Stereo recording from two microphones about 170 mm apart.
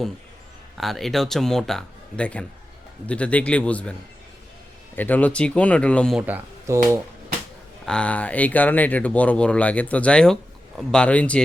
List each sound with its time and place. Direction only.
0.8 s speech: centre (ahead or behind)
4.9 s speech: 10° left (ahead or behind)
6.1 s speech: 10° right (ahead or behind)
7.9 s speech: 5° left (ahead or behind)